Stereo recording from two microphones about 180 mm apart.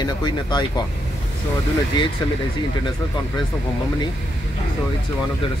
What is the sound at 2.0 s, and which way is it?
Speech, 25° left (ahead or behind).